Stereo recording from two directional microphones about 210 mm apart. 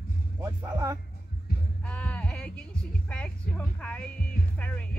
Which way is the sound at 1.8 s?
5° left (ahead or behind).